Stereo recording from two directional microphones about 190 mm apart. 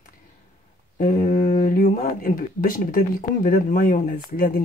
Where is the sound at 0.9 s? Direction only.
45° left (ahead or behind).